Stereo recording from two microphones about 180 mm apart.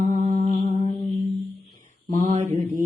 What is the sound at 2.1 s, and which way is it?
Mantra, 45° right (ahead or behind).